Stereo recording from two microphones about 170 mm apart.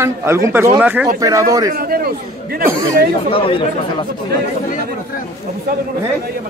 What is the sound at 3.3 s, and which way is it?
Speech, 30° left (ahead or behind).